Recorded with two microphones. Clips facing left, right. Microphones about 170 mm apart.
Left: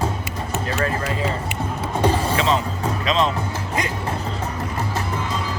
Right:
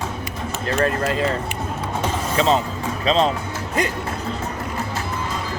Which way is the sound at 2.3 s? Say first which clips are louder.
Right 2 dB; 40° right (ahead or behind).